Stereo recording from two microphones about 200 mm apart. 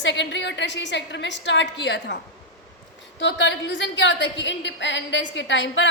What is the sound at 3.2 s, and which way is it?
A woman's voice, 60° left (ahead or behind).